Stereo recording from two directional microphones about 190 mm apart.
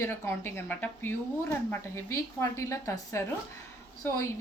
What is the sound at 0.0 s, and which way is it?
Speech, 10° left (ahead or behind).